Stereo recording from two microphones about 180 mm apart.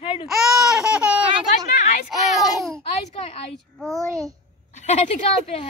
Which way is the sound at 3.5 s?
Centre (ahead or behind).